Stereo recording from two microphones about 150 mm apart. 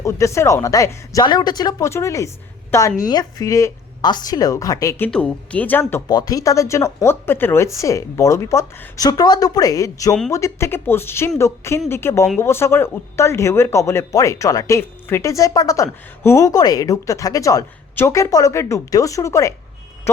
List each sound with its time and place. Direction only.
0.0 s speech: 20° left (ahead or behind)
6.1 s speech: 25° left (ahead or behind)